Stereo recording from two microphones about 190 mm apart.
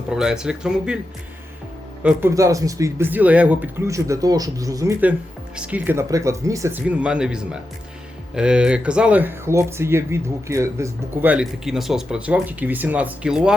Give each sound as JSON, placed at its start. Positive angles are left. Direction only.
{"t": 0.1, "sound": "speech", "side_deg": -5}
{"t": 2.0, "sound": "speech", "side_deg": -15}